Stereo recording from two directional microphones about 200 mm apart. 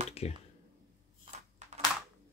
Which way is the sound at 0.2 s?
30° left (ahead or behind).